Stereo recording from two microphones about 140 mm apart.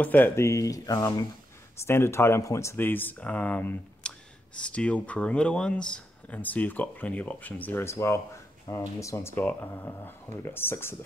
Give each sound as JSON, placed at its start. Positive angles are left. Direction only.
{"t": 0.0, "sound": "speech", "side_deg": 15}